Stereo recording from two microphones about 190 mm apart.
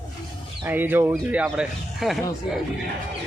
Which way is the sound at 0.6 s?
10° right (ahead or behind).